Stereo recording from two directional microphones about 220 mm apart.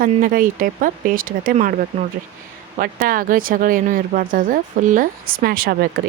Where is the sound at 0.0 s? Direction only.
40° right (ahead or behind).